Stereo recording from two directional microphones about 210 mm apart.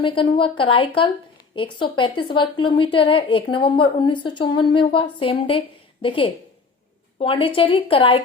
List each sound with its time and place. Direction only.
0.0 s a woman's voice: 25° left (ahead or behind)